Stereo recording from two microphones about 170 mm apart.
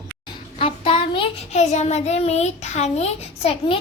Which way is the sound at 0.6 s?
30° left (ahead or behind).